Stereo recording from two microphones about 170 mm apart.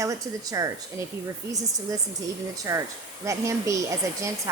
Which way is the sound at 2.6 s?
20° right (ahead or behind).